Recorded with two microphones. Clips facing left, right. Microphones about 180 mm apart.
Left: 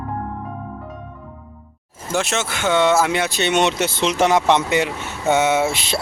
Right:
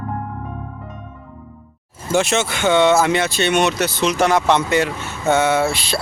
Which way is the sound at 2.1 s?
Centre (ahead or behind).